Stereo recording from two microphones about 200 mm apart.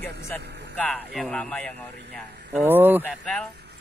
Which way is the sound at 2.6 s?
10° right (ahead or behind).